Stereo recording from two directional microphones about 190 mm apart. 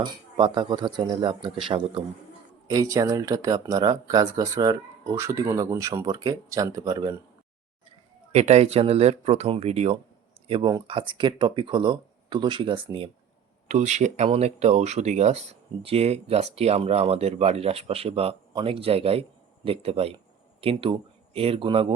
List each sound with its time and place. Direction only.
0.0 s speech: 25° right (ahead or behind)
8.3 s speech: 35° right (ahead or behind)
13.7 s speech: 35° right (ahead or behind)